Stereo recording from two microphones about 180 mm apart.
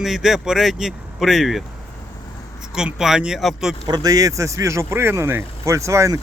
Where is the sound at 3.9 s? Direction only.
20° right (ahead or behind).